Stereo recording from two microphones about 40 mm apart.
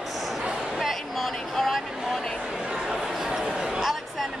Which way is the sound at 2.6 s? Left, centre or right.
Right.